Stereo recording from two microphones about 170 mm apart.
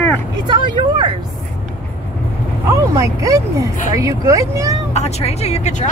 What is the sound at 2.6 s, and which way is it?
Speech, 20° right (ahead or behind).